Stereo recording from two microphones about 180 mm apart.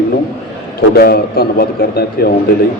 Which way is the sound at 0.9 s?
60° left (ahead or behind).